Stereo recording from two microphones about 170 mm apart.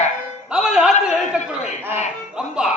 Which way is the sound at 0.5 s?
5° right (ahead or behind).